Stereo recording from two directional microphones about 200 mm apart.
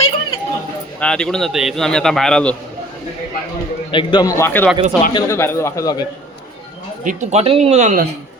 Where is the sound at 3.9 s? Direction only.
25° left (ahead or behind).